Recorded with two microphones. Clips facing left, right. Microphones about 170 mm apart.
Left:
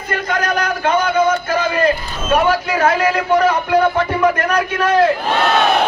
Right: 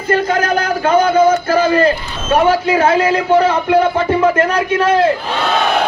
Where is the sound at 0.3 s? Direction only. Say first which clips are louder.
Right 3 dB; 30° right (ahead or behind).